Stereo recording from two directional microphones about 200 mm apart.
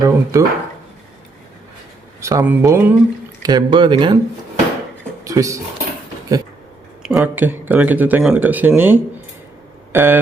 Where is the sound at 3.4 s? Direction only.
25° right (ahead or behind).